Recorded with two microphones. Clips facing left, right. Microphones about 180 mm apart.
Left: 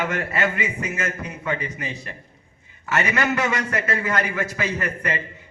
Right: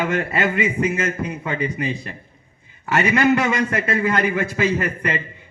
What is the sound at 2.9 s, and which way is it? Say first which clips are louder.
A man's voice: right 6 dB; 30° right (ahead or behind).